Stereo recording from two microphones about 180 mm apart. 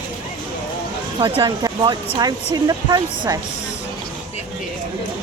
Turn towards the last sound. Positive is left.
turn(degrees=-25)  # may be behind; listen again after turning